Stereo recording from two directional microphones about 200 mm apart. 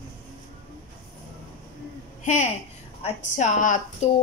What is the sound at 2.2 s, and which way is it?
A woman's voice, 35° left (ahead or behind).